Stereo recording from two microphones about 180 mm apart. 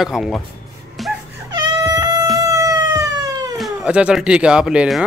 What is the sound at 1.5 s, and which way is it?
Wail, 20° right (ahead or behind).